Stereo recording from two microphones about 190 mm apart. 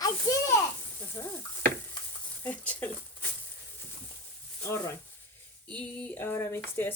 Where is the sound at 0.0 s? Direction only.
20° left (ahead or behind).